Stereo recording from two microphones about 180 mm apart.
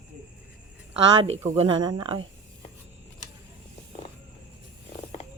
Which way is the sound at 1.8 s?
25° right (ahead or behind).